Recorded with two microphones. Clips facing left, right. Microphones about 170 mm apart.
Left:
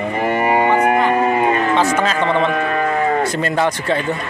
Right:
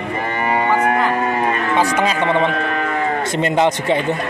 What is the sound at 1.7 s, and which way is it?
Speech, 15° right (ahead or behind).